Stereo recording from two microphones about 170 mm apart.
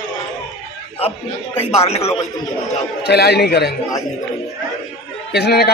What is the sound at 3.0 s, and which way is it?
Speech, 75° left (ahead or behind).